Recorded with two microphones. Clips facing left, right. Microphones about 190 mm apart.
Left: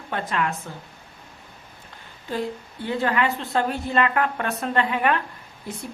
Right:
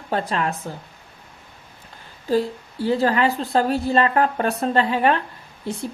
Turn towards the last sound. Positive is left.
turn(degrees=-30)  # may be behind; listen again after turning